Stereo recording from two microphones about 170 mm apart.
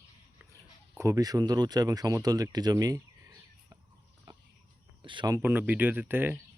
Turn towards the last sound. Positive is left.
turn(degrees=-10)  # may be behind; listen again after turning